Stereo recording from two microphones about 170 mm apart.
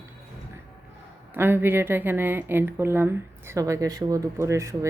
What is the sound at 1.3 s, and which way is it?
Speech, 15° right (ahead or behind).